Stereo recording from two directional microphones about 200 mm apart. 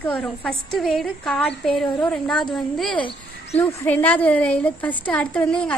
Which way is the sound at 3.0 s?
25° left (ahead or behind).